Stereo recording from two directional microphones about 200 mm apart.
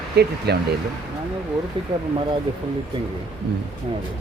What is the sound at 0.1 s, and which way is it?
Speech, 55° right (ahead or behind).